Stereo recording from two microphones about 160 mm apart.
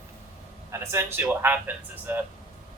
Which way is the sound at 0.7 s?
15° right (ahead or behind).